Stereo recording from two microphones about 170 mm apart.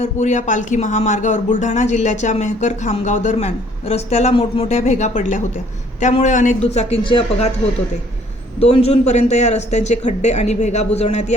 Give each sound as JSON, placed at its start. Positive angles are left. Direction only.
{"t": 0.0, "sound": "speech", "side_deg": 45}
{"t": 8.5, "sound": "speech", "side_deg": 35}